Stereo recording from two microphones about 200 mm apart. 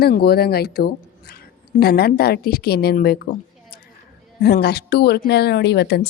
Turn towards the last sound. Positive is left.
turn(degrees=55)  # may be behind; listen again after turning